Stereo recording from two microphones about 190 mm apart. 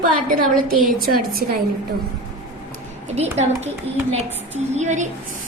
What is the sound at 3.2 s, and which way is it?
A woman's voice, 35° right (ahead or behind).